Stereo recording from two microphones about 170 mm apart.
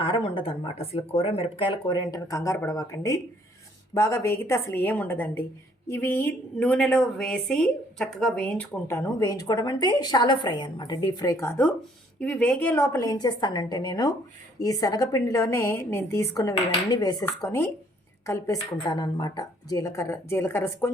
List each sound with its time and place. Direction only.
0.0 s a woman's voice: 30° left (ahead or behind); by 11.6 s 15° left (ahead or behind)
12.2 s a woman's voice: 5° left (ahead or behind)